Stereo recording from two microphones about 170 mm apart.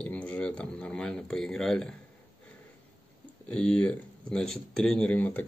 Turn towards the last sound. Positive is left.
turn(degrees=10)  # may be behind; listen again after turning